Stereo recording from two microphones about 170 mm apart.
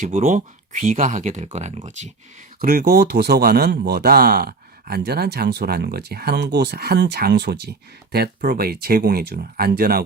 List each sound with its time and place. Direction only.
0.0 s speech: 45° right (ahead or behind)
2.6 s a man's voice: 60° right (ahead or behind)